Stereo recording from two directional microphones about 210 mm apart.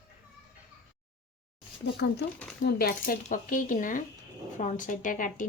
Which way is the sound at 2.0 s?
55° left (ahead or behind).